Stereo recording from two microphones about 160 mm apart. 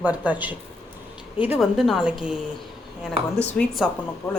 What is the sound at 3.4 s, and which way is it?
Speech, 5° left (ahead or behind).